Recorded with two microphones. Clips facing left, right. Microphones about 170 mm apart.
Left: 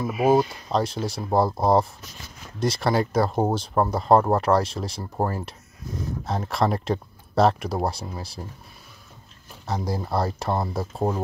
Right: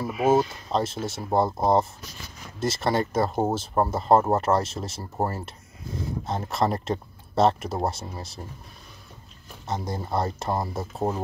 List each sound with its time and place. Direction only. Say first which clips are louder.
0.1 s speech: left 1 dB; centre (ahead or behind)
6.2 s speech: left 2 dB; centre (ahead or behind)
9.7 s speech: left 2 dB; centre (ahead or behind)